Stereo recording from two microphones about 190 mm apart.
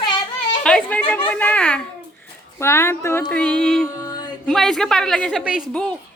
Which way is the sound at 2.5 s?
15° left (ahead or behind).